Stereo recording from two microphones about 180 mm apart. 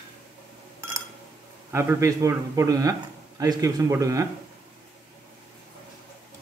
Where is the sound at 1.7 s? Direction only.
15° right (ahead or behind).